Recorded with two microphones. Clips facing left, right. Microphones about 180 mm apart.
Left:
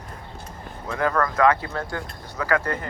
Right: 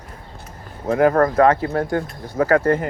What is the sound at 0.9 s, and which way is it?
Speech, 35° right (ahead or behind).